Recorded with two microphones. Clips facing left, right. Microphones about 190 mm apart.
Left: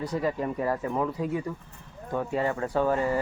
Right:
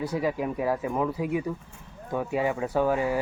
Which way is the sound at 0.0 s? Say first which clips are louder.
Right 1 dB; 5° right (ahead or behind).